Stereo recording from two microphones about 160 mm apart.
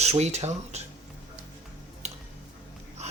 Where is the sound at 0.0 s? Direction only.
40° right (ahead or behind).